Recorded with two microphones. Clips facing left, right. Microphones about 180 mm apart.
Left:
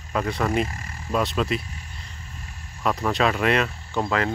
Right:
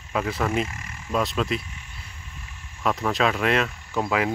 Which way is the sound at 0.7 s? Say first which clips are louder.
Left 2 dB; 35° left (ahead or behind).